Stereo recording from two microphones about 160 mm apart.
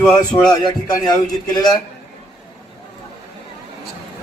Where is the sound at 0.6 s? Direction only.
25° left (ahead or behind).